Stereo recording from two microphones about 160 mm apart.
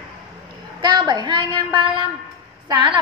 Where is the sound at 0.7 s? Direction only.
25° right (ahead or behind).